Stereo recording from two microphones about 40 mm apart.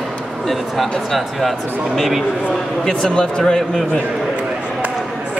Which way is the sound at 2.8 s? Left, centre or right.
Centre.